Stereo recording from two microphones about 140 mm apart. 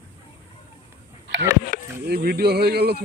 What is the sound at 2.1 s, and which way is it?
Speech, 90° right.